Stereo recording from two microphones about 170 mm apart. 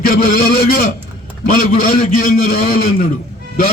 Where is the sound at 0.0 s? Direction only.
60° left (ahead or behind).